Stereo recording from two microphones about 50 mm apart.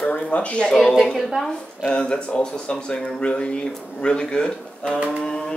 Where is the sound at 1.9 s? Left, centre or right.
Left.